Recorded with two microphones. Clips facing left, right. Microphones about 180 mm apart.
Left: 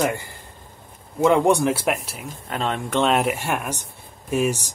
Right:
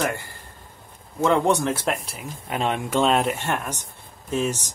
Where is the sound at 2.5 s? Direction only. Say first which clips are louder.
Right 1 dB; 15° right (ahead or behind).